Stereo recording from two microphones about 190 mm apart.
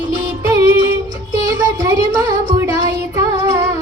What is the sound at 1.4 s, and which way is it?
Music, 20° right (ahead or behind).